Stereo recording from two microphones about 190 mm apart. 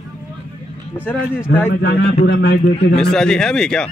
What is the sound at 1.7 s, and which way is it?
A man's voice, 65° left (ahead or behind).